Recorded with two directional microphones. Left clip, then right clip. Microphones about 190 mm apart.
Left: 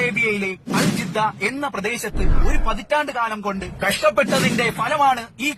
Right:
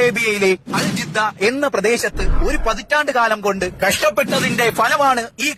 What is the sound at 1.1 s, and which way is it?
Speech, 30° right (ahead or behind).